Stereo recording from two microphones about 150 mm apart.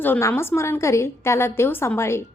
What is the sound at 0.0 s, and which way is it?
A woman's voice, 15° left (ahead or behind).